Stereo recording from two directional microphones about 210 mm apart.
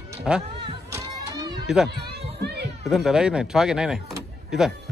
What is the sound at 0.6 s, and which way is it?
Music, 15° right (ahead or behind).